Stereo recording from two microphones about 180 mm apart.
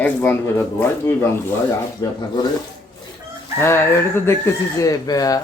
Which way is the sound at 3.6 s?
15° left (ahead or behind).